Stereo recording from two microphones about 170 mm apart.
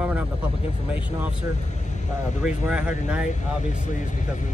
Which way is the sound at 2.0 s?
45° left (ahead or behind).